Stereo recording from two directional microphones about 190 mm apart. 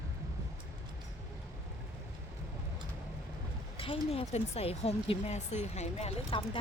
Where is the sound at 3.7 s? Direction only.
30° left (ahead or behind).